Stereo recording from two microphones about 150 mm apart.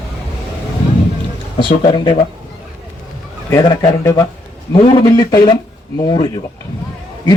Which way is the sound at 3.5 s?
20° left (ahead or behind).